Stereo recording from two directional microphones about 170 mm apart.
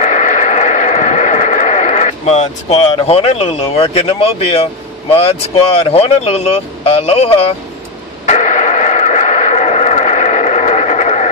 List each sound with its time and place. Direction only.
0.0 s a sound: 45° left (ahead or behind)
5.1 s speech: 35° left (ahead or behind)
8.3 s radio: 45° left (ahead or behind)